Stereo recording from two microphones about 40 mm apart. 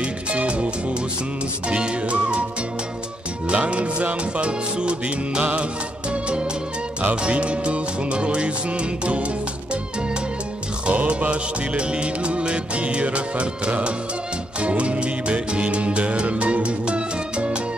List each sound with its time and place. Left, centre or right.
0.3 s music: right
3.4 s music: right
7.2 s music: right
10.9 s music: right